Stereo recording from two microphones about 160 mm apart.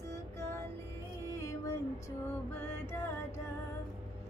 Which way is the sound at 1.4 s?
20° left (ahead or behind).